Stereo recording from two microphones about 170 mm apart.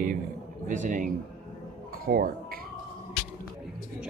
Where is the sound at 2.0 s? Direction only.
60° right (ahead or behind).